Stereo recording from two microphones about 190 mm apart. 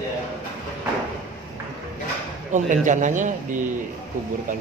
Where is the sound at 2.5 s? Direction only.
40° right (ahead or behind).